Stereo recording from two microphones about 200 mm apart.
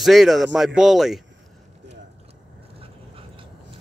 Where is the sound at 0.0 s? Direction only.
Centre (ahead or behind).